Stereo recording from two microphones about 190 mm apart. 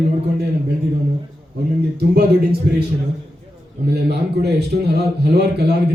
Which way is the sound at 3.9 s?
60° right (ahead or behind).